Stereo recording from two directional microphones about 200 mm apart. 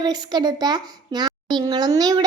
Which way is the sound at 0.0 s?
20° right (ahead or behind).